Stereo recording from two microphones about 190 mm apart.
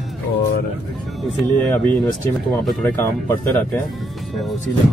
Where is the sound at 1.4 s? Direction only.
10° left (ahead or behind).